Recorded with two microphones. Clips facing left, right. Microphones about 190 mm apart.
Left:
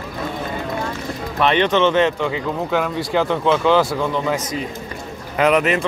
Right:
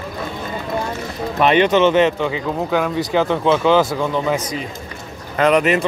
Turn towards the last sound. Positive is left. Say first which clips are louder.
# right 1 dB
turn(degrees=0)  # may be behind; listen again after turning